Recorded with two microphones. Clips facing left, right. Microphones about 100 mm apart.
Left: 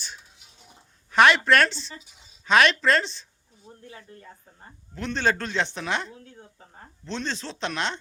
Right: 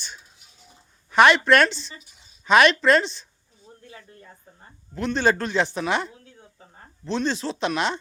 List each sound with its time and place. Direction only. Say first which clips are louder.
1.1 s speech: right 2 dB; centre (ahead or behind)
3.7 s a sound: left 1 dB; 20° left (ahead or behind)
4.9 s speech: right 4 dB; 5° right (ahead or behind)